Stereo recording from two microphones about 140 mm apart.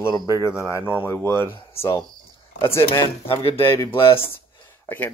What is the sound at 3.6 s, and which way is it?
Speech, 20° left (ahead or behind).